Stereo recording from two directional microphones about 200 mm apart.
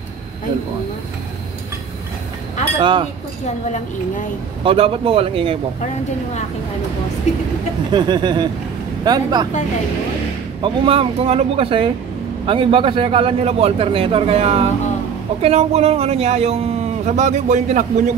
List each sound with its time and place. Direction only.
2.8 s a man's voice: 25° right (ahead or behind)
4.6 s a man's voice: 25° right (ahead or behind)
7.3 s speech: 35° left (ahead or behind)
7.9 s a man's voice: 20° right (ahead or behind)
10.6 s a man's voice: 25° right (ahead or behind)